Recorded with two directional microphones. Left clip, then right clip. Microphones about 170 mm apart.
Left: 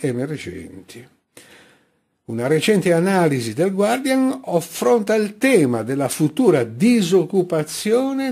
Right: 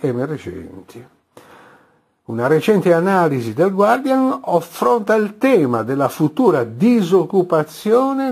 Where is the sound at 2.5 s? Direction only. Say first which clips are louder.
Right 2 dB; 10° left (ahead or behind).